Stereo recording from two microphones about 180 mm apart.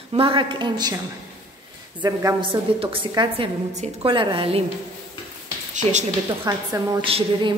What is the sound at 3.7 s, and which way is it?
Speech, 40° right (ahead or behind).